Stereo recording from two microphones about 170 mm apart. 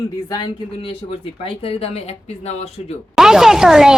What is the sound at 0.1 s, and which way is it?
Speech, 25° left (ahead or behind).